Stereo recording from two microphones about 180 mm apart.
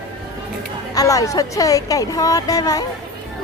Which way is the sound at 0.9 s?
20° left (ahead or behind).